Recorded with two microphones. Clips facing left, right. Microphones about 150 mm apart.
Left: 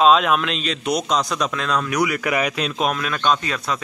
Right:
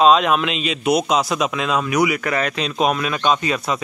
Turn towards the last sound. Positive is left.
turn(degrees=-5)  # may be behind; listen again after turning